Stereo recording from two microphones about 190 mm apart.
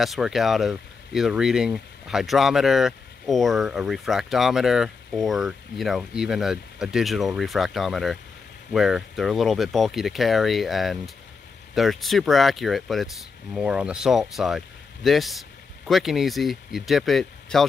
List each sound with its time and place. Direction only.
0.0 s speech: centre (ahead or behind)